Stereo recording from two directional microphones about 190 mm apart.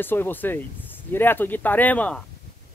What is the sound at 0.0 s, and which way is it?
Speech, 10° left (ahead or behind).